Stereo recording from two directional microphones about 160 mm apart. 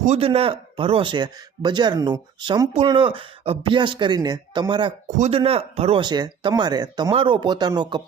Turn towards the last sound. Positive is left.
turn(degrees=-25)  # may be behind; listen again after turning